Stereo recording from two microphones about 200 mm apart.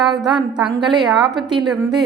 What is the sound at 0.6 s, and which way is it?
Speech, centre (ahead or behind).